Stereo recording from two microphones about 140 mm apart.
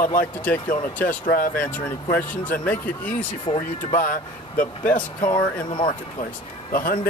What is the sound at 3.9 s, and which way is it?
Speech, 85° left.